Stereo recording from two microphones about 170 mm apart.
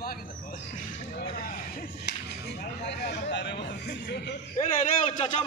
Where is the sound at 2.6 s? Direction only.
75° left (ahead or behind).